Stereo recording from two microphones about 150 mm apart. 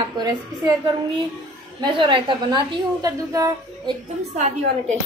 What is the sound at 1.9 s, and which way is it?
A woman's voice, 35° right (ahead or behind).